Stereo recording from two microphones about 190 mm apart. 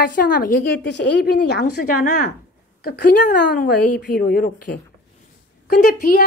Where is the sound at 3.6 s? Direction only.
45° left (ahead or behind).